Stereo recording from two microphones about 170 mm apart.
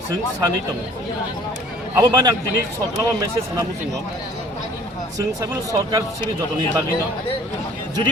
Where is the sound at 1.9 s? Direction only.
25° right (ahead or behind).